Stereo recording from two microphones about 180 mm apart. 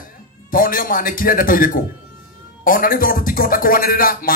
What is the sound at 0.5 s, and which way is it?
Speech, 50° left (ahead or behind).